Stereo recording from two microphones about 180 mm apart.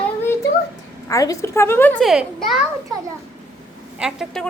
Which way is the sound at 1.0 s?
20° left (ahead or behind).